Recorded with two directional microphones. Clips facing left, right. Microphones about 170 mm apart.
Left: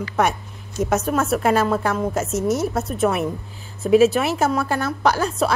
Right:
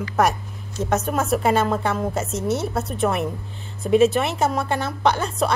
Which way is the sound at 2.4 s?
30° right (ahead or behind).